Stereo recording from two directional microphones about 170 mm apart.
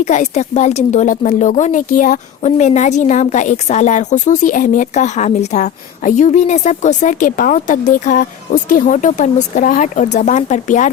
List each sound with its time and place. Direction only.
0.0 s speech: 40° left (ahead or behind)